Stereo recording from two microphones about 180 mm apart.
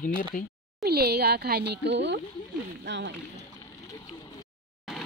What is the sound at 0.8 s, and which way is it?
Speech, 60° right (ahead or behind).